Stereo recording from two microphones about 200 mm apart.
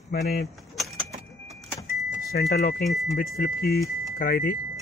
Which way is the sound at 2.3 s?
50° left (ahead or behind).